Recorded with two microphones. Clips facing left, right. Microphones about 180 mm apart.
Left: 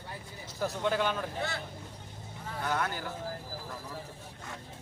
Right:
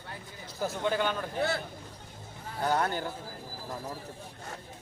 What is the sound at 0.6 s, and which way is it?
Speech, centre (ahead or behind).